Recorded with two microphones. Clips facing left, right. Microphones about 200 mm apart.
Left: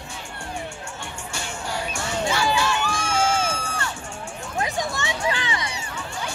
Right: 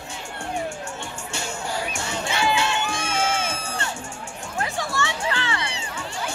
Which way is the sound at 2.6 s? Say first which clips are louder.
Left 1 dB; 25° right (ahead or behind).